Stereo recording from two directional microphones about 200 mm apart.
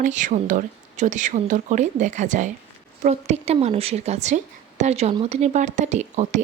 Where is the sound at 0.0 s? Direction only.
40° right (ahead or behind).